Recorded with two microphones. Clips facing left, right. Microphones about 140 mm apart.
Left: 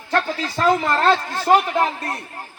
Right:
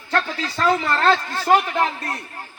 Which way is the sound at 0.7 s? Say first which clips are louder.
Left 1 dB; 20° left (ahead or behind).